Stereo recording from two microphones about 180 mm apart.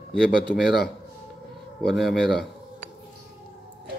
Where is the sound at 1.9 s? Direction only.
Centre (ahead or behind).